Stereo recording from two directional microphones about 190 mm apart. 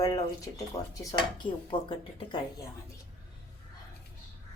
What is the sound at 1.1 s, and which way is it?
Speech, 20° left (ahead or behind).